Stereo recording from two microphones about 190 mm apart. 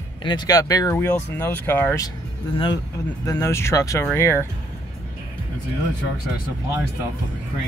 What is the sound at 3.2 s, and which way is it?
Speech, 15° left (ahead or behind).